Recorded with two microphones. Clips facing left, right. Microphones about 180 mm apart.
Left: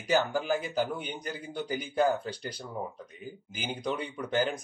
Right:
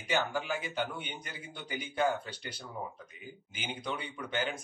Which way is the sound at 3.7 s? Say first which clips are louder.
Left 5 dB; 35° left (ahead or behind).